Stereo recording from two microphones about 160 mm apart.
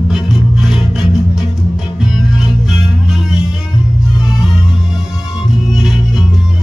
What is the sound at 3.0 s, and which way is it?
Music, centre (ahead or behind).